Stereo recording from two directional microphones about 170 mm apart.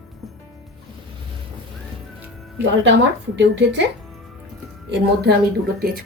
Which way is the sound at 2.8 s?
90° right.